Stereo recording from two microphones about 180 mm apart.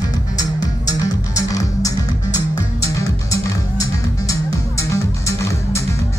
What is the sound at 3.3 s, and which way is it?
Music, 20° left (ahead or behind).